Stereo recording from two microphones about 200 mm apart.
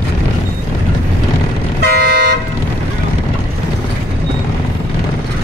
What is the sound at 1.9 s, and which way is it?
Toot, 50° right (ahead or behind).